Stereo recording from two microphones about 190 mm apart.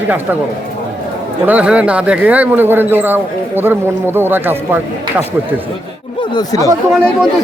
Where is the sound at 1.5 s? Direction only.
5° right (ahead or behind).